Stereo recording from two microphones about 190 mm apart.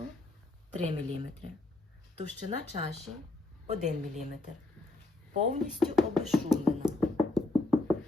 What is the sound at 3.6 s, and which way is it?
Speech, 40° right (ahead or behind).